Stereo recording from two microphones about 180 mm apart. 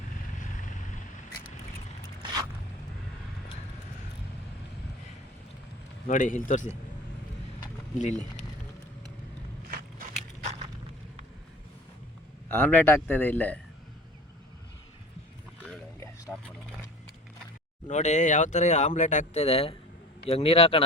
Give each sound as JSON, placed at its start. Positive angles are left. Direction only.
{"t": 0.3, "sound": "vehicle", "side_deg": 45}
{"t": 2.2, "sound": "zipper", "side_deg": -20}
{"t": 6.1, "sound": "speech", "side_deg": 45}
{"t": 7.9, "sound": "speech", "side_deg": 40}
{"t": 12.5, "sound": "speech", "side_deg": 10}
{"t": 15.6, "sound": "a sound", "side_deg": 5}
{"t": 17.8, "sound": "speech", "side_deg": 40}